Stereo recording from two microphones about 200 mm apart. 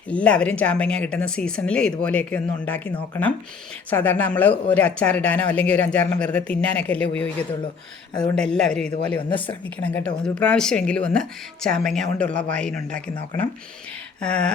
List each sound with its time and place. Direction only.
0.1 s speech: 5° left (ahead or behind)
8.1 s speech: 20° left (ahead or behind)
8.4 s speech: 5° left (ahead or behind)
14.2 s speech: 5° left (ahead or behind)